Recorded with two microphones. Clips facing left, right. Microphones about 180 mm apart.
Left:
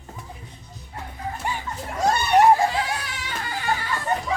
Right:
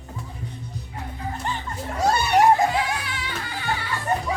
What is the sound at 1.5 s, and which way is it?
Music, 10° left (ahead or behind).